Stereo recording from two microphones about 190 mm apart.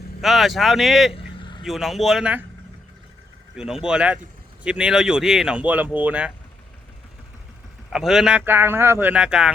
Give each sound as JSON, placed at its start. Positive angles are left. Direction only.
{"t": 0.2, "sound": "speech", "side_deg": 0}
{"t": 1.1, "sound": "vehicle", "side_deg": 25}
{"t": 1.6, "sound": "speech", "side_deg": 0}
{"t": 3.5, "sound": "speech", "side_deg": -5}
{"t": 7.9, "sound": "speech", "side_deg": 0}